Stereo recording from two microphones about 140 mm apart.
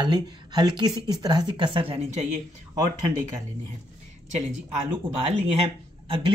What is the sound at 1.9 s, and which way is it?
Speech, 50° right (ahead or behind).